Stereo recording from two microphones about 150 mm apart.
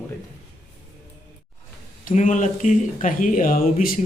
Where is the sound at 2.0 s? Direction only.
55° left (ahead or behind).